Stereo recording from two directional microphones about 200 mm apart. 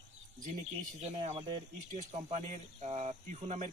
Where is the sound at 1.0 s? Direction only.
35° right (ahead or behind).